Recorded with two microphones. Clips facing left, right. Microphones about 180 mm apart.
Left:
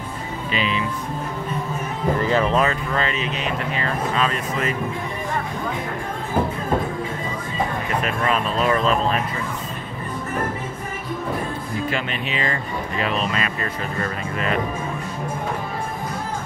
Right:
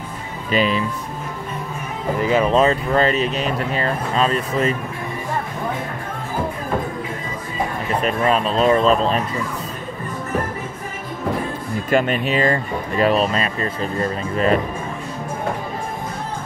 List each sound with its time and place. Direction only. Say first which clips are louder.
0.5 s speech: right 6 dB; 40° right (ahead or behind)
2.2 s speech: right 4 dB; 15° right (ahead or behind)
2.5 s speech: right 5 dB; 30° right (ahead or behind)
8.0 s speech: right 6 dB; 35° right (ahead or behind)
11.9 s speech: right 8 dB; 45° right (ahead or behind)